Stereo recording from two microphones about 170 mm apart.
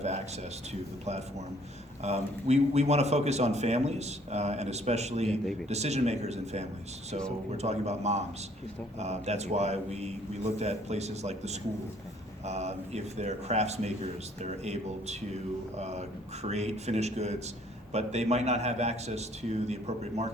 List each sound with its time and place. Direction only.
0.7 s a man's voice: 40° right (ahead or behind)